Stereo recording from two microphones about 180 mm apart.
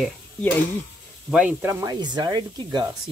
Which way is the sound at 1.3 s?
10° right (ahead or behind).